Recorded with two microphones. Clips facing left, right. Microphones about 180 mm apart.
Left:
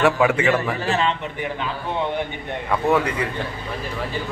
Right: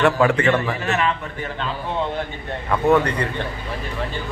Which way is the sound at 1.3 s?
15° left (ahead or behind).